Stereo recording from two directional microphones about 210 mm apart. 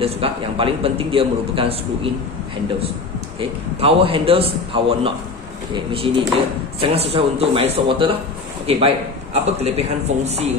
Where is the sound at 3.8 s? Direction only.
25° right (ahead or behind).